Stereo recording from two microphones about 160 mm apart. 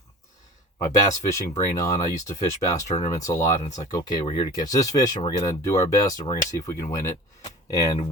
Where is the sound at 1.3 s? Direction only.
20° left (ahead or behind).